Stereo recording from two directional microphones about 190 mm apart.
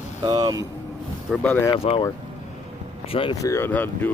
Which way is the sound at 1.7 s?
30° left (ahead or behind).